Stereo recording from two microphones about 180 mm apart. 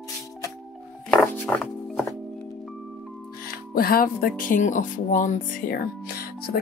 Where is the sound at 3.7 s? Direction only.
55° left (ahead or behind).